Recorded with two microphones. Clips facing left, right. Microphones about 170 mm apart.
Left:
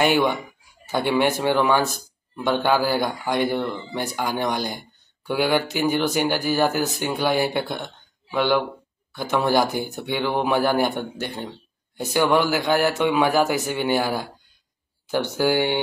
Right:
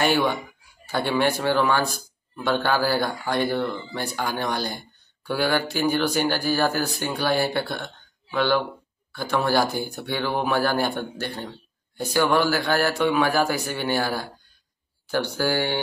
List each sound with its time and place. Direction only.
0.0 s speech: 15° left (ahead or behind)